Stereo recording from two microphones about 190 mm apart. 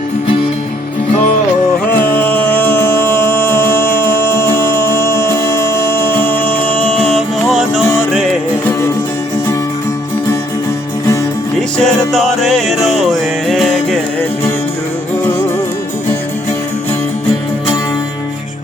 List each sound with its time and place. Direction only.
2.0 s music: 10° left (ahead or behind)
11.8 s music: centre (ahead or behind)